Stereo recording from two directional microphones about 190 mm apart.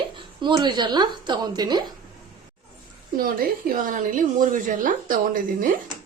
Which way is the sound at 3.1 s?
50° right (ahead or behind).